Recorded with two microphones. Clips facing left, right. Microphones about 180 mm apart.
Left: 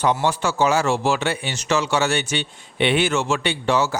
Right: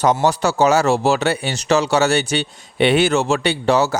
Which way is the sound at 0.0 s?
40° right (ahead or behind).